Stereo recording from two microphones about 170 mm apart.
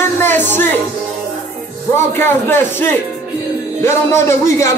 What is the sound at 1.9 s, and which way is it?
A man's voice, 15° left (ahead or behind).